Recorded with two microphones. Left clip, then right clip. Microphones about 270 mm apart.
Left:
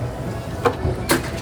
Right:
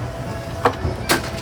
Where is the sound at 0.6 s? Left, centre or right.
Centre.